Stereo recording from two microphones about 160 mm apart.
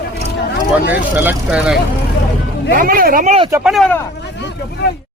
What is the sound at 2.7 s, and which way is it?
Speech, 60° right (ahead or behind).